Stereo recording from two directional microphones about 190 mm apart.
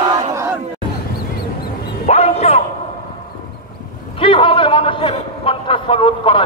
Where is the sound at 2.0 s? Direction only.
35° left (ahead or behind).